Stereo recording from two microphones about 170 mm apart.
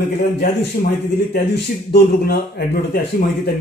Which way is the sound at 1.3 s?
70° left (ahead or behind).